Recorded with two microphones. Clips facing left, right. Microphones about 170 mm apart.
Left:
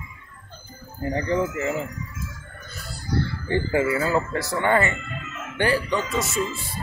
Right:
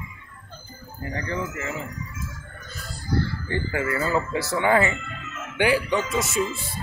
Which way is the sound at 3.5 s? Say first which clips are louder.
Left 6 dB; 20° left (ahead or behind).